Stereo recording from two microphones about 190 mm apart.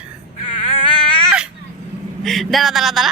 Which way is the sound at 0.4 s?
30° left (ahead or behind).